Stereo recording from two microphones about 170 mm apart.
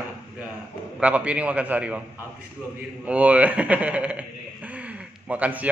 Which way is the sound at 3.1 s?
10° right (ahead or behind).